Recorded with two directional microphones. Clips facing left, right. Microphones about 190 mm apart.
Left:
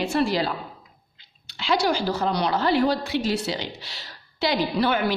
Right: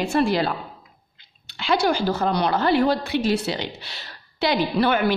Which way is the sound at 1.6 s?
55° right (ahead or behind).